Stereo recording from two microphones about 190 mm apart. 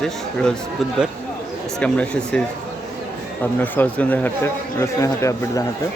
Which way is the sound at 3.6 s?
10° left (ahead or behind).